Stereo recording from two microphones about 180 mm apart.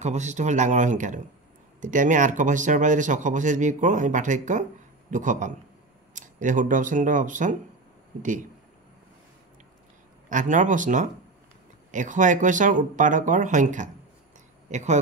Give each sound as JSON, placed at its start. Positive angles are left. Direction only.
{"t": 0.0, "sound": "speech", "side_deg": -40}
{"t": 10.3, "sound": "speech", "side_deg": -45}